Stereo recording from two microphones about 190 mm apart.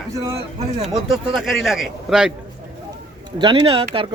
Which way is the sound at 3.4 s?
25° right (ahead or behind).